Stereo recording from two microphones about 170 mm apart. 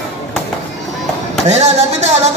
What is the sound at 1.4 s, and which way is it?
Speech, 40° right (ahead or behind).